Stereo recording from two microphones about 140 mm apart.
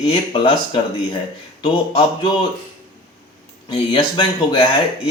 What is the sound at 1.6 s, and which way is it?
Speech, 45° left (ahead or behind).